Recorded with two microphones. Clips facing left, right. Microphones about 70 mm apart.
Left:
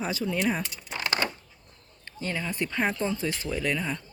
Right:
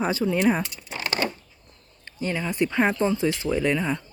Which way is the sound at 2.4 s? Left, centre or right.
Centre.